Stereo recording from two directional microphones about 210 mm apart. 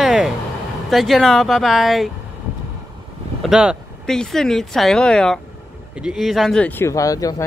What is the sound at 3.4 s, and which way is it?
Speech, centre (ahead or behind).